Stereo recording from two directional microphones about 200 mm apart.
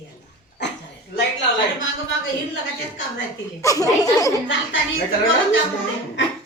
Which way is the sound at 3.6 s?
15° left (ahead or behind).